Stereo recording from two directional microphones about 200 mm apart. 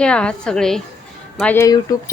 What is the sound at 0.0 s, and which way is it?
A woman's voice, 5° left (ahead or behind).